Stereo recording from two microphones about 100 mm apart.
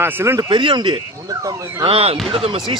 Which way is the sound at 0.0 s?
25° right (ahead or behind).